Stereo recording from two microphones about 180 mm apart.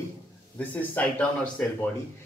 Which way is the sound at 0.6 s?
10° left (ahead or behind).